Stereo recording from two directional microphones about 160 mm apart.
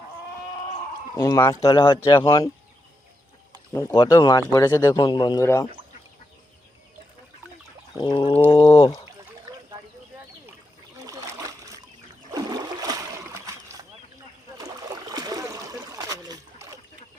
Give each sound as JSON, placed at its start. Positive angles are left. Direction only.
{"t": 1.1, "sound": "speech", "side_deg": 20}
{"t": 1.6, "sound": "speech", "side_deg": 35}
{"t": 3.9, "sound": "speech", "side_deg": 30}
{"t": 7.9, "sound": "speech", "side_deg": 30}
{"t": 11.0, "sound": "splash", "side_deg": -20}
{"t": 14.6, "sound": "a sound", "side_deg": -25}